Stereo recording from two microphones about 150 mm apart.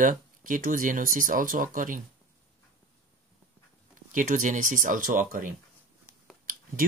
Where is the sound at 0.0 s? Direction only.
65° right (ahead or behind).